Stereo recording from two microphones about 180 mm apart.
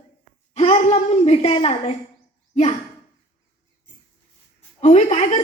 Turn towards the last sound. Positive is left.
turn(degrees=35)  # may be behind; listen again after turning